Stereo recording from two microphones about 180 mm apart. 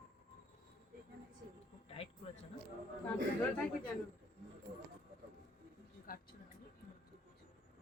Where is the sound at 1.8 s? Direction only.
30° left (ahead or behind).